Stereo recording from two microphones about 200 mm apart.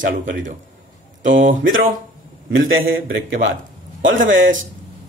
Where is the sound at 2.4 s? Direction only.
75° right (ahead or behind).